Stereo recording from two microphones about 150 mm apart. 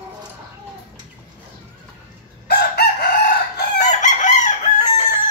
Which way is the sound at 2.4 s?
90° left.